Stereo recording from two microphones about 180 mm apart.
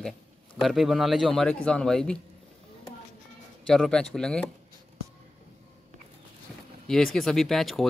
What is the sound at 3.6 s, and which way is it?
Speech, 5° left (ahead or behind).